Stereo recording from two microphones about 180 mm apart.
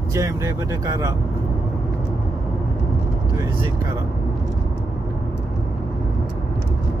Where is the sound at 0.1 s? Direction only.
15° right (ahead or behind).